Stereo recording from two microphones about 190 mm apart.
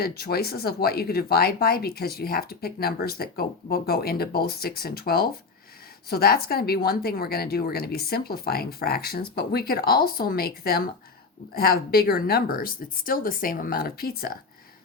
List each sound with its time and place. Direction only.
0.0 s speech: 55° left (ahead or behind)